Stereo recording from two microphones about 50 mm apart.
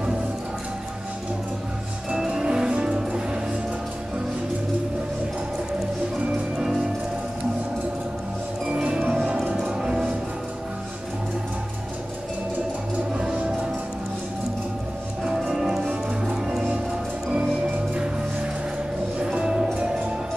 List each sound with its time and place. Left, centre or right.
2.0 s music: centre
6.6 s music: centre
8.7 s music: centre
15.2 s music: centre
15.9 s music: right
19.1 s music: centre